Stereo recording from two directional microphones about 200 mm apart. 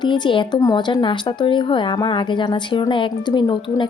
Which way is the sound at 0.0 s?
25° left (ahead or behind).